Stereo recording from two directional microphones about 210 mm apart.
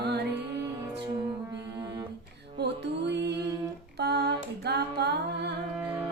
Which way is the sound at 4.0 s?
50° right (ahead or behind).